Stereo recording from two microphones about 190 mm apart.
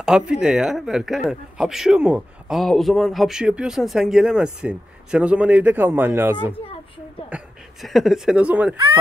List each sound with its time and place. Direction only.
0.0 s speech: 5° right (ahead or behind)
6.6 s a sound: 30° left (ahead or behind)
7.2 s speech: 5° right (ahead or behind)